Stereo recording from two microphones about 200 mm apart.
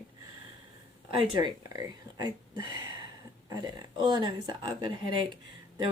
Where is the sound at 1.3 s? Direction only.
20° right (ahead or behind).